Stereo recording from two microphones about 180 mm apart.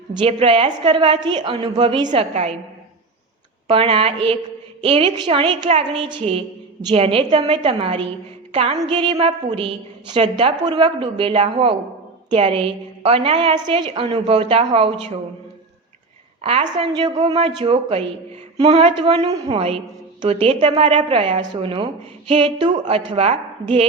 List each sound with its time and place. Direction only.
0.1 s a woman's voice: 30° right (ahead or behind)
2.0 s a woman's voice: 35° right (ahead or behind)
3.7 s a woman's voice: 30° right (ahead or behind)
16.4 s a woman's voice: 30° right (ahead or behind)